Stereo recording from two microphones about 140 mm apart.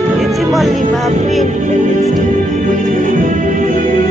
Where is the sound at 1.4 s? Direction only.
60° right (ahead or behind).